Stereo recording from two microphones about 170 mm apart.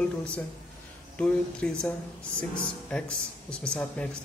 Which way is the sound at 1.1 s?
5° left (ahead or behind).